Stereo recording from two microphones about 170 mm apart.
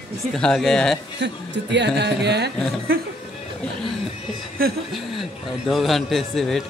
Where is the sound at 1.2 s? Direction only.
90° right.